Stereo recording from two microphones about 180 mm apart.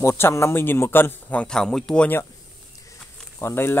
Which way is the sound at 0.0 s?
15° left (ahead or behind).